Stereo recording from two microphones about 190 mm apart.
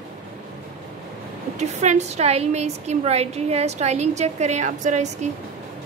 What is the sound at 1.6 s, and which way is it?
A woman's voice, 35° right (ahead or behind).